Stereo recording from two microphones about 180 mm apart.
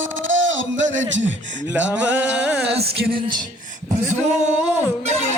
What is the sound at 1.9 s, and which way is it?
Music, 10° right (ahead or behind).